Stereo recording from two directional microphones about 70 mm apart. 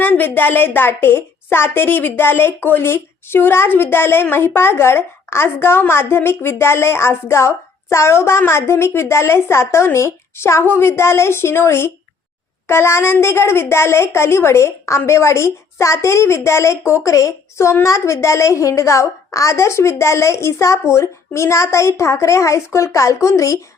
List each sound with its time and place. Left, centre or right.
0.0 s a woman's voice: left